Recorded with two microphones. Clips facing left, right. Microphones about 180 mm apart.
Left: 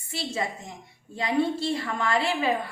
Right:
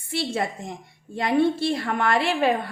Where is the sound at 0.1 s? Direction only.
65° right (ahead or behind).